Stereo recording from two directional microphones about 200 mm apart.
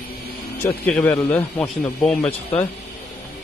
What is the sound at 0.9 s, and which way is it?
Speech, 5° left (ahead or behind).